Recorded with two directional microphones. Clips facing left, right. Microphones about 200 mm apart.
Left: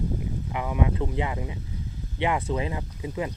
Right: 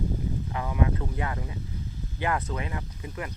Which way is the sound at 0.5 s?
15° left (ahead or behind).